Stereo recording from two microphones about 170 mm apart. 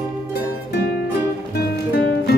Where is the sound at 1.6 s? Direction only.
75° left (ahead or behind).